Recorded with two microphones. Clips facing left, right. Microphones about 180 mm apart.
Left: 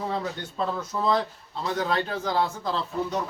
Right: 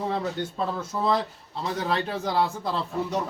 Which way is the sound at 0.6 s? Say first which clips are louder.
Left 1 dB; 5° right (ahead or behind).